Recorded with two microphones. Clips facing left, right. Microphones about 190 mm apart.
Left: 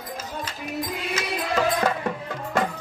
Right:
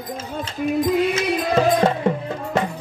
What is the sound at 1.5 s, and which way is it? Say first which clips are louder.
Music: right 5 dB; 30° right (ahead or behind).